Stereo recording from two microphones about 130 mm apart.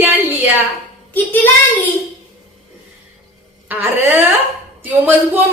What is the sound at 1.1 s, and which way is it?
Child singing, 15° left (ahead or behind).